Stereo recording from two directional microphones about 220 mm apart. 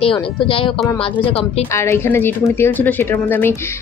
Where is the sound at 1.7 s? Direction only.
10° left (ahead or behind).